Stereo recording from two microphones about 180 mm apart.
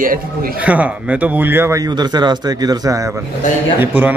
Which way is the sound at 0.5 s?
5° right (ahead or behind).